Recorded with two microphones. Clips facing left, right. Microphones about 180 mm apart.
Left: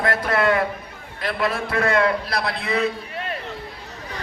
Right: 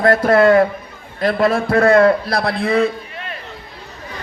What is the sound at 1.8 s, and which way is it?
A man's voice, 35° right (ahead or behind).